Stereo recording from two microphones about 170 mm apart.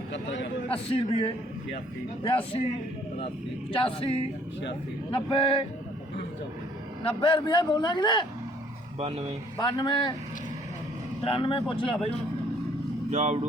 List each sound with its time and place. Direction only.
0.1 s a sound: 90° left
0.7 s a man's voice: 35° left (ahead or behind)
3.7 s a man's voice: 30° left (ahead or behind)
7.0 s a man's voice: 30° left (ahead or behind)
9.0 s speech: 35° right (ahead or behind)
9.6 s a man's voice: 25° left (ahead or behind)
11.2 s a man's voice: 30° left (ahead or behind)
13.1 s speech: 40° right (ahead or behind)